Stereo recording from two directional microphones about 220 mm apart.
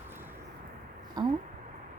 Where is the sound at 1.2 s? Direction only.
20° right (ahead or behind).